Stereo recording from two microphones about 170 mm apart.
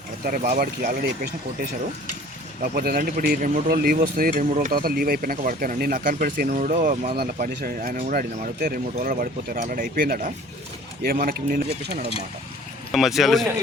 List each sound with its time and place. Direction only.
0.3 s speech: 65° right (ahead or behind)
2.6 s speech: 60° right (ahead or behind)
12.9 s speech: centre (ahead or behind)